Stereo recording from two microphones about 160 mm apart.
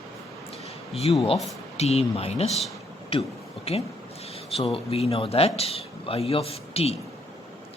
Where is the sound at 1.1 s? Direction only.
35° left (ahead or behind).